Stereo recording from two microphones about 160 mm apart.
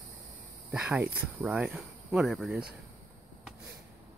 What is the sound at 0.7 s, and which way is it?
Speech, 5° right (ahead or behind).